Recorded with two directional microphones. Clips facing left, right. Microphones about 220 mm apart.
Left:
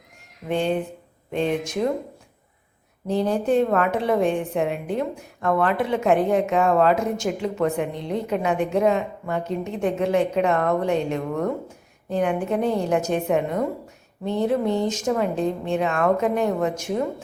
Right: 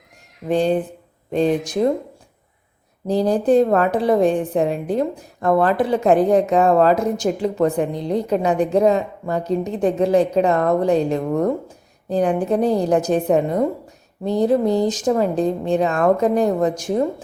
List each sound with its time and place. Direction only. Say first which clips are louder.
0.4 s a woman's voice: right 5 dB; 35° right (ahead or behind)
3.1 s a woman's voice: right 5 dB; 35° right (ahead or behind)